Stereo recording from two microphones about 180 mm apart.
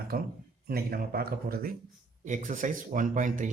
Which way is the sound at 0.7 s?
55° right (ahead or behind).